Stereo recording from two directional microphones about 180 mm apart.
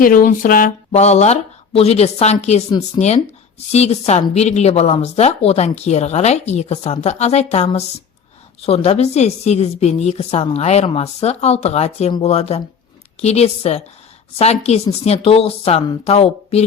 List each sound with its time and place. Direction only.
0.0 s speech: 50° left (ahead or behind)
0.9 s speech: 35° left (ahead or behind)
2.6 s speech: 25° left (ahead or behind)
3.7 s speech: 35° left (ahead or behind)